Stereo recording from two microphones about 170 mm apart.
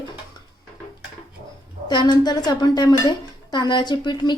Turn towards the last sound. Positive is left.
turn(degrees=25)  # may be behind; listen again after turning